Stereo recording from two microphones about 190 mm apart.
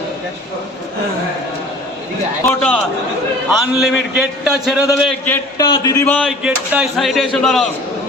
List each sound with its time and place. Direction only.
2.5 s a man's voice: 5° left (ahead or behind)
5.5 s speech: 20° left (ahead or behind)
6.4 s a man's voice: centre (ahead or behind)